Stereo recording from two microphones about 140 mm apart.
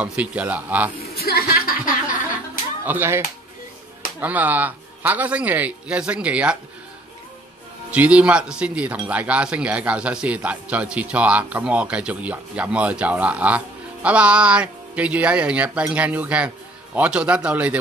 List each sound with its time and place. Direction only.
0.0 s speech: 10° right (ahead or behind)
1.1 s speech: 90° left
2.8 s speech: 15° right (ahead or behind)
4.2 s speech: 10° right (ahead or behind)
7.9 s speech: 10° right (ahead or behind)